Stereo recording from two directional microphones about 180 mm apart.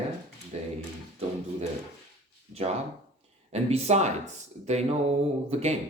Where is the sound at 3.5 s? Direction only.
35° right (ahead or behind).